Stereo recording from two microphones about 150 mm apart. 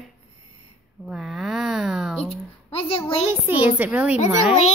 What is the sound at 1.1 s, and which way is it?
Speech, centre (ahead or behind).